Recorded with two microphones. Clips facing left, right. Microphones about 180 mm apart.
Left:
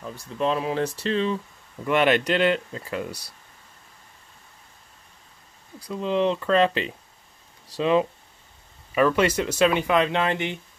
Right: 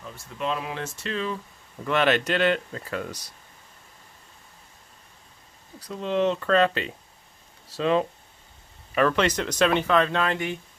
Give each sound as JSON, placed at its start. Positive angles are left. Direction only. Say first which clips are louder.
{"t": 0.1, "sound": "speech", "louder": "left 5 dB", "side_deg": 35}
{"t": 1.9, "sound": "speech", "louder": "left 2 dB", "side_deg": 15}
{"t": 5.8, "sound": "speech", "louder": "left 1 dB", "side_deg": 10}